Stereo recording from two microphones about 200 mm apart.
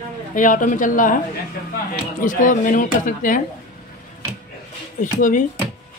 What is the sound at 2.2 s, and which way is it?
Speech, 40° left (ahead or behind).